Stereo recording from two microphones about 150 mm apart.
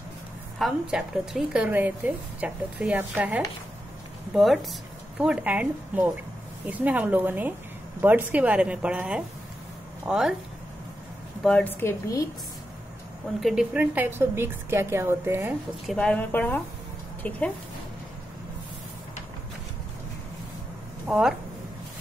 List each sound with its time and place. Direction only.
0.6 s a woman's voice: 5° right (ahead or behind)
11.4 s a woman's voice: 10° left (ahead or behind)
13.4 s speech: centre (ahead or behind)
13.7 s a woman's voice: 15° right (ahead or behind)
15.9 s a woman's voice: 5° left (ahead or behind)
21.1 s speech: 5° right (ahead or behind)